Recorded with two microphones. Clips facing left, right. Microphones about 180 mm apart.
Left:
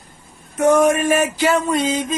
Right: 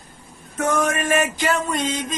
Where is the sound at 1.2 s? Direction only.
10° left (ahead or behind).